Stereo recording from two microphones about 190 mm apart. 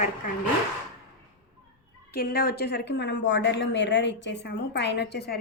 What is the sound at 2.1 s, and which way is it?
Speech, 55° left (ahead or behind).